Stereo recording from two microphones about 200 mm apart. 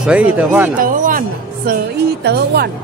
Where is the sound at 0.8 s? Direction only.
45° right (ahead or behind).